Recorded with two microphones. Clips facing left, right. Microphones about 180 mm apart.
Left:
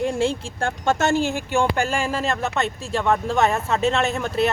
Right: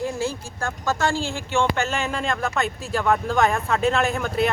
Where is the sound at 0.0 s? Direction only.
25° left (ahead or behind).